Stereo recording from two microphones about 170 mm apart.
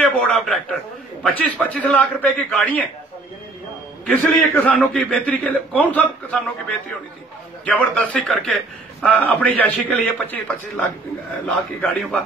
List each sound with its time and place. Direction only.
0.0 s a sound: centre (ahead or behind)
1.2 s a man's voice: 10° left (ahead or behind)
4.0 s a man's voice: 10° left (ahead or behind)
7.6 s a man's voice: 5° left (ahead or behind)